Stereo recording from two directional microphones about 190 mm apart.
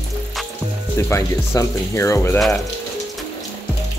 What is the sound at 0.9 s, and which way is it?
Speech, 15° left (ahead or behind).